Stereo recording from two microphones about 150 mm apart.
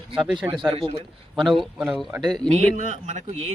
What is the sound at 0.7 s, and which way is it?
Speech, 35° right (ahead or behind).